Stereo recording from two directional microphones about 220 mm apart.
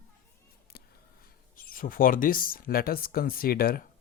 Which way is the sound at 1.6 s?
40° left (ahead or behind).